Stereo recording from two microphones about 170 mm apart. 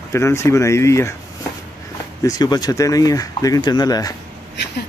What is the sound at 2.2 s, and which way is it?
Speech, 20° left (ahead or behind).